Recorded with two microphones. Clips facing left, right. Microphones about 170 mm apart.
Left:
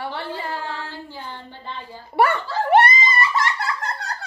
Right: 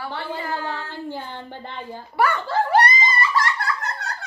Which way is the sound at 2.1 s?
25° left (ahead or behind).